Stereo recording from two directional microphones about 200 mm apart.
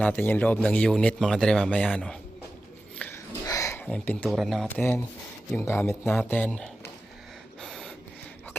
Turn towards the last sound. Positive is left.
turn(degrees=0)  # may be behind; listen again after turning